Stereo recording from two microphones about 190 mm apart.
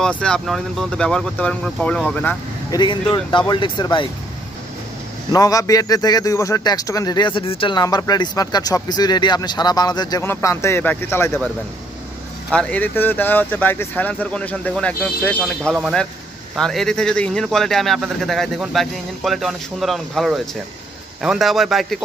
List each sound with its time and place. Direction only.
0.0 s a man's voice: 5° left (ahead or behind)
2.7 s speech: 25° left (ahead or behind)
5.3 s speech: 20° left (ahead or behind)
12.5 s a man's voice: 5° left (ahead or behind)